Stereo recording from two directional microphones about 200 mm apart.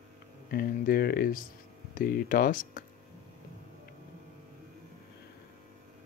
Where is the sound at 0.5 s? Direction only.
45° left (ahead or behind).